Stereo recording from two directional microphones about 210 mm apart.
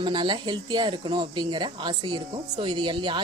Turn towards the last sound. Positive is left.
turn(degrees=-20)  # may be behind; listen again after turning